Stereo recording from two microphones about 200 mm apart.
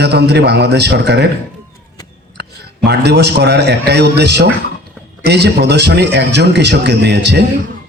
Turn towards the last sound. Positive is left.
turn(degrees=-55)  # may be behind; listen again after turning